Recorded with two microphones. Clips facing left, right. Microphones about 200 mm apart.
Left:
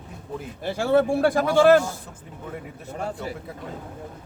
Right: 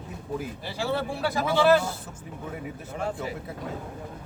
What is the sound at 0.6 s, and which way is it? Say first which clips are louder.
Speech: left 12 dB; 50° left (ahead or behind).